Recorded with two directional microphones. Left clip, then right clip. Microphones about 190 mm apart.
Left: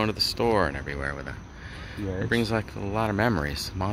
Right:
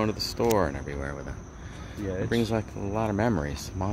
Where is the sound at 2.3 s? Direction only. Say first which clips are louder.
Left 3 dB; 5° left (ahead or behind).